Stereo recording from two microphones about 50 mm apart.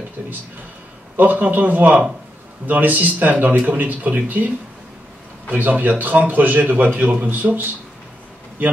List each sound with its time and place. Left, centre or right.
0.2 s speech: right
5.5 s a man's voice: right